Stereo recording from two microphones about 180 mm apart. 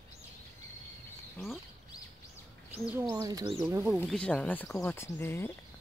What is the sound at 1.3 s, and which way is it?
Speech, centre (ahead or behind).